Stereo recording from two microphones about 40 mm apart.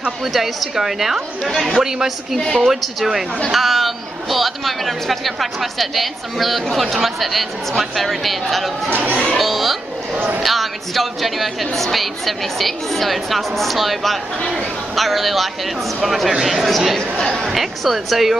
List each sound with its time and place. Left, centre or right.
0.2 s a woman's voice: centre
1.5 s speech: centre
1.8 s a woman's voice: centre
8.9 s speech: right
9.4 s speech: centre
10.1 s speech: right
10.4 s a woman's voice: centre